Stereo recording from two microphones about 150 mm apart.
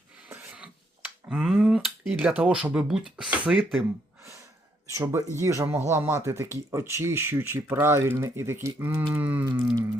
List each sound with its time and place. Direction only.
0.3 s finger snapping: 10° right (ahead or behind)
4.9 s speech: 20° right (ahead or behind)